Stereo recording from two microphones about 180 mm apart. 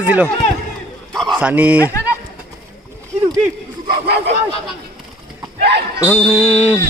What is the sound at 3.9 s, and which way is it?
Bow-wow, 65° right (ahead or behind).